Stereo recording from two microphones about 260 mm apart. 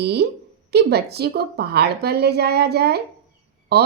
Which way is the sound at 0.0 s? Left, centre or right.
Right.